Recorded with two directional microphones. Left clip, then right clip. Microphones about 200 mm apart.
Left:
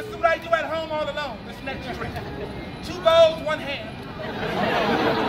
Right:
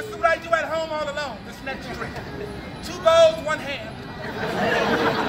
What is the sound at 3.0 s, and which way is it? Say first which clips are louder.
Speech: right 1 dB; centre (ahead or behind).